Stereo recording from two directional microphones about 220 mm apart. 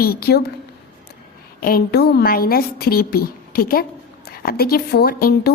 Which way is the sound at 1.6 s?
45° left (ahead or behind).